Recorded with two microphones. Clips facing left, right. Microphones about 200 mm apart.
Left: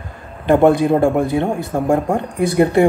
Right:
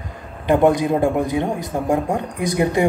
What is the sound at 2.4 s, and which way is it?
Speech, 15° right (ahead or behind).